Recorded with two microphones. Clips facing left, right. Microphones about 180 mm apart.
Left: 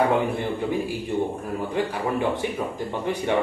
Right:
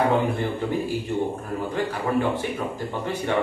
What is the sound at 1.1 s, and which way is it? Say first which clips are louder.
Speech: left 4 dB; 15° left (ahead or behind).